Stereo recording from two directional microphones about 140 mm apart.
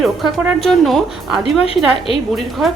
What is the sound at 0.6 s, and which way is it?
Speech, centre (ahead or behind).